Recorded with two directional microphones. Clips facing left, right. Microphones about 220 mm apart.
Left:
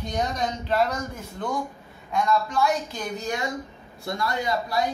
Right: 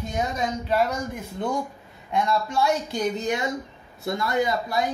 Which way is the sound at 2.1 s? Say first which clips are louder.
Even; 25° right (ahead or behind).